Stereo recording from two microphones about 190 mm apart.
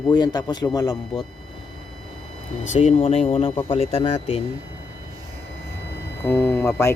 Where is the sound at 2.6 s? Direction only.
35° left (ahead or behind).